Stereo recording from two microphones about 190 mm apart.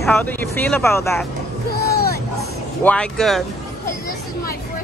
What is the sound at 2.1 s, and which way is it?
Music, 15° left (ahead or behind).